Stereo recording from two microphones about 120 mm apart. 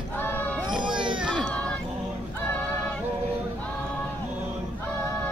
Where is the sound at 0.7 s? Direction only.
40° right (ahead or behind).